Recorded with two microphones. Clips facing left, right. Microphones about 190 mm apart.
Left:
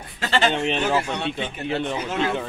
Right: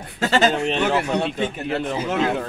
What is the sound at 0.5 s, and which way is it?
Speech, centre (ahead or behind).